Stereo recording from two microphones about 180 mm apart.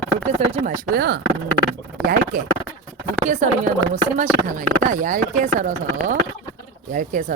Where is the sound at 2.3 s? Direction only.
45° right (ahead or behind).